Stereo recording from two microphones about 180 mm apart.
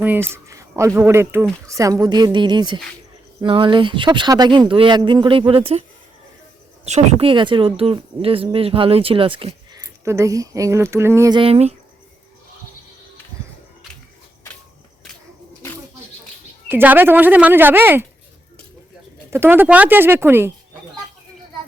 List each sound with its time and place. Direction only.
0.0 s speech: 10° right (ahead or behind); by 5.8 s 30° right (ahead or behind)
6.8 s speech: 40° right (ahead or behind)
9.7 s speech: 15° right (ahead or behind)
11.3 s speech: 30° right (ahead or behind)
16.6 s speech: 10° right (ahead or behind)
19.3 s speech: 10° right (ahead or behind)